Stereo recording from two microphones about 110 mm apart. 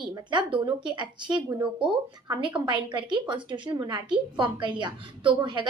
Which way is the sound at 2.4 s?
50° right (ahead or behind).